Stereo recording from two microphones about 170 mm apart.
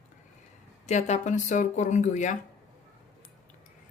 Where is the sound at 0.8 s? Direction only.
40° left (ahead or behind).